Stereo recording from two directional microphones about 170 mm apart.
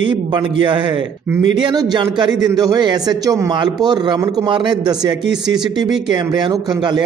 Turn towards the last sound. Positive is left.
turn(degrees=-25)  # may be behind; listen again after turning